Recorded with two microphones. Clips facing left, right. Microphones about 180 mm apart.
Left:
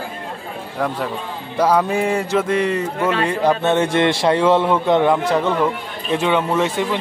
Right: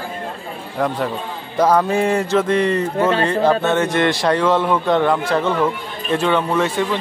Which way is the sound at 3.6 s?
25° left (ahead or behind).